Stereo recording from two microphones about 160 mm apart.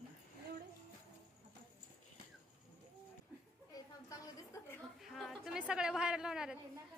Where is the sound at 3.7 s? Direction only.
20° left (ahead or behind).